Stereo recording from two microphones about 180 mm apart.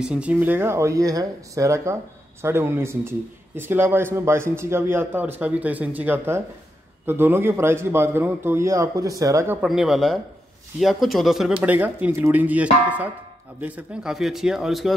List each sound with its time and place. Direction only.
0.0 s speech: 5° right (ahead or behind)
9.6 s a man's voice: centre (ahead or behind)